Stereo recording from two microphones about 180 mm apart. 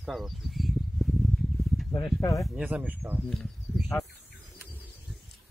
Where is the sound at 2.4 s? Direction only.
5° right (ahead or behind).